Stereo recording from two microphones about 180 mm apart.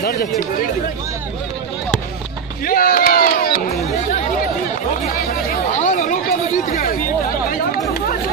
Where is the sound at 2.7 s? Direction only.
55° left (ahead or behind).